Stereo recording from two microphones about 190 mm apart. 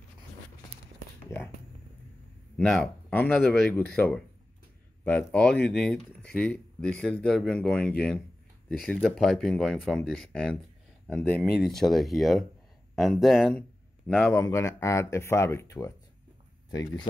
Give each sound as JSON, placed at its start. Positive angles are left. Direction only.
{"t": 2.5, "sound": "speech", "side_deg": 5}
{"t": 14.4, "sound": "speech", "side_deg": 15}